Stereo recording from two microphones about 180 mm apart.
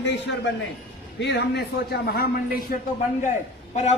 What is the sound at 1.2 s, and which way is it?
A man's voice, 70° left (ahead or behind).